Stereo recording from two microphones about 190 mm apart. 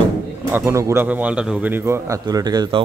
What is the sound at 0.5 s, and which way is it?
Speech, 15° right (ahead or behind).